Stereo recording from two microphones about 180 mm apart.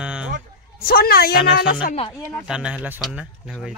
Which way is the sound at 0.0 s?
5° right (ahead or behind).